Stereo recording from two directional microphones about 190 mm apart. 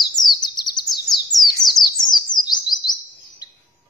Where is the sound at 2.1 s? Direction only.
20° left (ahead or behind).